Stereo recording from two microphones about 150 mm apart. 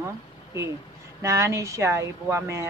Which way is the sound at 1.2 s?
20° right (ahead or behind).